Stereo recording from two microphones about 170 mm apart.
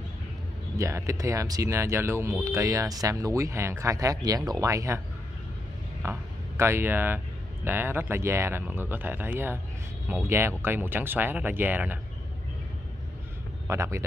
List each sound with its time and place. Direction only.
0.7 s speech: 15° right (ahead or behind)
6.0 s speech: 15° right (ahead or behind)
13.7 s speech: 15° right (ahead or behind)